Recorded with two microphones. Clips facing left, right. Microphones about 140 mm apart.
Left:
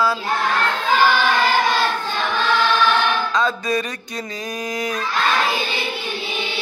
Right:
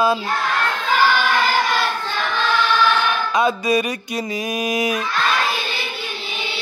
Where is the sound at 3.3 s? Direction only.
15° right (ahead or behind).